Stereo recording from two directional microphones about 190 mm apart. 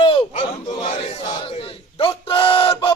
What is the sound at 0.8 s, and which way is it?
Battle cry, 30° left (ahead or behind).